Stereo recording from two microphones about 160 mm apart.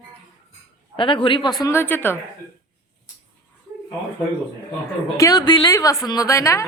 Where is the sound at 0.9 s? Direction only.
35° left (ahead or behind).